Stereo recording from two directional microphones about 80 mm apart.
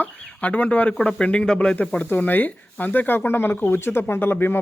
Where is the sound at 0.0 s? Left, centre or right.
Centre.